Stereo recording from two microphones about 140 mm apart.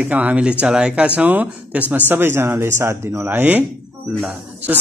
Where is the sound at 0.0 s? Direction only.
10° right (ahead or behind).